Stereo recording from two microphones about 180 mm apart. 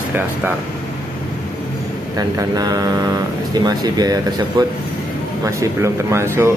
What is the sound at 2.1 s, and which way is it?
Speech, 20° right (ahead or behind).